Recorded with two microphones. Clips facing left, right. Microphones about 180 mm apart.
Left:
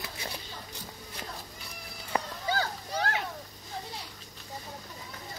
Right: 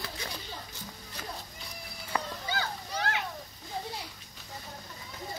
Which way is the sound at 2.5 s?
35° left (ahead or behind).